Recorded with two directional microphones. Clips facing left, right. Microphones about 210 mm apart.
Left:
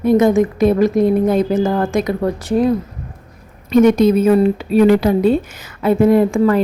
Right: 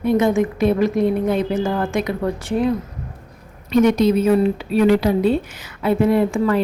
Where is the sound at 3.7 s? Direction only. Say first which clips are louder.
Left 4 dB; 50° left (ahead or behind).